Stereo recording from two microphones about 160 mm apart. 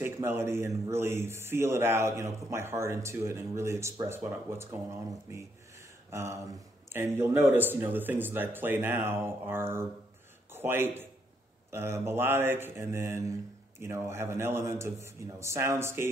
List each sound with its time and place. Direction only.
0.0 s a man's voice: 15° right (ahead or behind)
5.3 s a sound: 15° right (ahead or behind)
6.9 s a man's voice: 15° right (ahead or behind)